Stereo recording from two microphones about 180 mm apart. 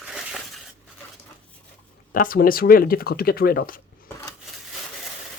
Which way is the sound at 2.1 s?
50° left (ahead or behind).